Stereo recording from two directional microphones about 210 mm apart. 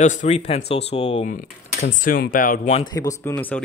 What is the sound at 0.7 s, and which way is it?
Speech, 30° left (ahead or behind).